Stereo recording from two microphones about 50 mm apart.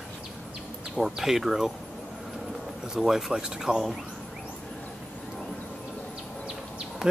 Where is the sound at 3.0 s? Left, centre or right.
Centre.